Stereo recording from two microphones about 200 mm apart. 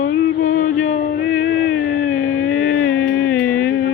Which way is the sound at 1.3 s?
90° left.